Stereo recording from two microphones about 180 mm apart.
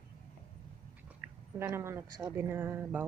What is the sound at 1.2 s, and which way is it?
A woman's voice, 15° right (ahead or behind).